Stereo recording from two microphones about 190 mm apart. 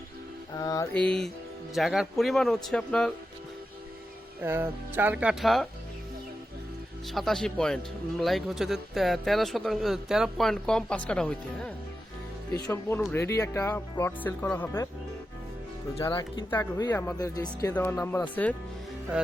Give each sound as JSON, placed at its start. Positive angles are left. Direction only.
{"t": 0.5, "sound": "speech", "side_deg": 20}
{"t": 0.9, "sound": "speech", "side_deg": 5}
{"t": 4.4, "sound": "speech", "side_deg": -10}
{"t": 7.1, "sound": "speech", "side_deg": 0}
{"t": 12.5, "sound": "speech", "side_deg": 15}
{"t": 16.0, "sound": "speech", "side_deg": 25}
{"t": 16.5, "sound": "speech", "side_deg": 10}